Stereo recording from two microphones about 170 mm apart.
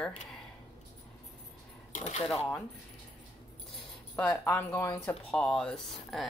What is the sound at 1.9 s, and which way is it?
Speech, 45° left (ahead or behind).